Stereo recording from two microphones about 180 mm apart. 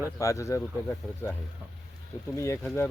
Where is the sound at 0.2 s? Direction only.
15° left (ahead or behind).